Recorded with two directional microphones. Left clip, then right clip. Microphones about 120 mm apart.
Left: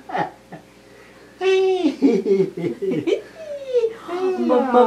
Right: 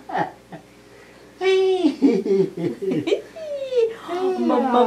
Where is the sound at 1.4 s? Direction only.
Centre (ahead or behind).